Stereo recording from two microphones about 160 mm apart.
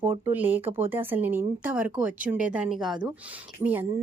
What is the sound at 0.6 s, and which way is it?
Speech, 35° right (ahead or behind).